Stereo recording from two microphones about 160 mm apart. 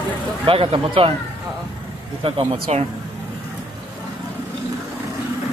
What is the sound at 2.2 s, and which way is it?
Speech, 35° right (ahead or behind).